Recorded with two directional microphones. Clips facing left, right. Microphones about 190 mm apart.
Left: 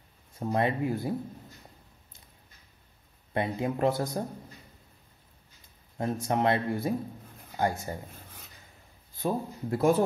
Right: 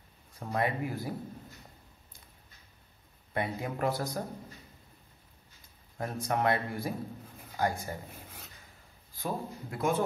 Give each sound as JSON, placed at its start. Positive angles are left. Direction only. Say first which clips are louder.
{"t": 0.3, "sound": "speech", "louder": "left 4 dB", "side_deg": 25}
{"t": 3.3, "sound": "speech", "louder": "left 4 dB", "side_deg": 25}
{"t": 5.9, "sound": "speech", "louder": "left 4 dB", "side_deg": 25}
{"t": 9.1, "sound": "speech", "louder": "left 5 dB", "side_deg": 30}